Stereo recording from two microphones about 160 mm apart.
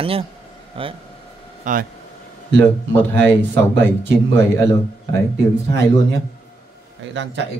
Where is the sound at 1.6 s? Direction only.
55° right (ahead or behind).